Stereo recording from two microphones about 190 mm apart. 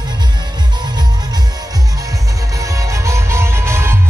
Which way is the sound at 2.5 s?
15° right (ahead or behind).